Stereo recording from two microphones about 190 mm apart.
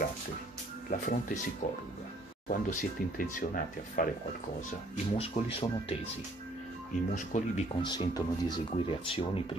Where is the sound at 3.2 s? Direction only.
45° left (ahead or behind).